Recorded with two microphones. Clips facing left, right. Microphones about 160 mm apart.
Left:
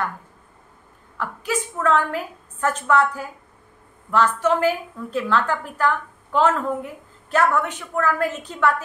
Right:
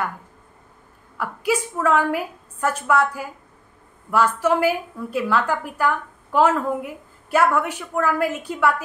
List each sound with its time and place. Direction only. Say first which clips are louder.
1.1 s a woman's voice: right 3 dB; 10° right (ahead or behind)